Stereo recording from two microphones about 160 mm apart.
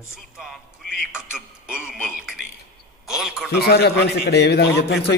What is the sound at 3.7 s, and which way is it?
A man's voice, 90° left.